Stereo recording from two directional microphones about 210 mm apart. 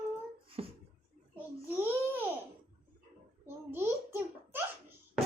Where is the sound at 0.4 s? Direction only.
25° right (ahead or behind).